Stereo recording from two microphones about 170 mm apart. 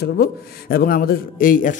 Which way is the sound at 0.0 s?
60° left (ahead or behind).